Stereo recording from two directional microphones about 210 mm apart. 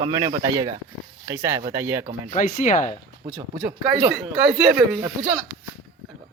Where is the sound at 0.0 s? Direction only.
20° right (ahead or behind).